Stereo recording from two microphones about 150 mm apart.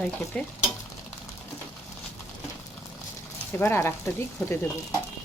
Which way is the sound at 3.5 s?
15° left (ahead or behind).